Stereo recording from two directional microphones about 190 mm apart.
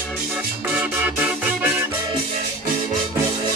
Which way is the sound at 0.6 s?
10° right (ahead or behind).